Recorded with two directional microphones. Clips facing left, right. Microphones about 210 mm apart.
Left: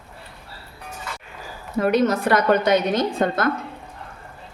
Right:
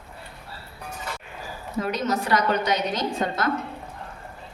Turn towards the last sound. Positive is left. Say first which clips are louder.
# left 4 dB
turn(degrees=55)  # may be behind; listen again after turning